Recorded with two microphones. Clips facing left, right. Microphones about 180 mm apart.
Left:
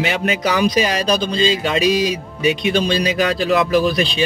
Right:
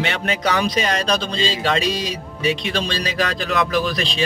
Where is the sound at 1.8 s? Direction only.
30° right (ahead or behind).